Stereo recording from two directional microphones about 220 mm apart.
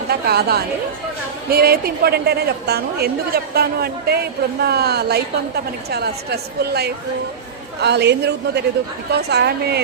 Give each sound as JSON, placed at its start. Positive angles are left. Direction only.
{"t": 0.1, "sound": "a woman's voice", "side_deg": -45}